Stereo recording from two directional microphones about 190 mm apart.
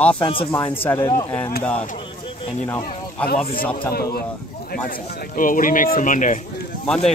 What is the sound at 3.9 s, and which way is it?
Speech, 55° left (ahead or behind).